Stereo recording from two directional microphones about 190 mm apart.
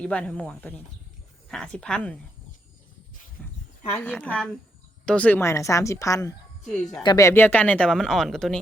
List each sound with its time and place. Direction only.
0.0 s speech: 5° left (ahead or behind)
3.4 s a sound: 10° left (ahead or behind)
3.9 s speech: 10° left (ahead or behind)
6.7 s speech: 5° left (ahead or behind)
7.0 s speech: 20° left (ahead or behind); by 8.5 s centre (ahead or behind)